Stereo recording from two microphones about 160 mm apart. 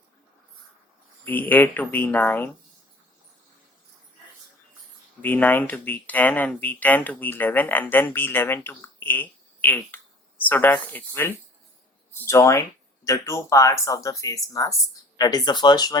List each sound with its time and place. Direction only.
1.2 s speech: 10° left (ahead or behind)
5.2 s speech: 10° left (ahead or behind)